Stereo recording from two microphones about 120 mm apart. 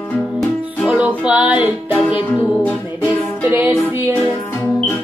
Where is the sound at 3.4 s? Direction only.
15° right (ahead or behind).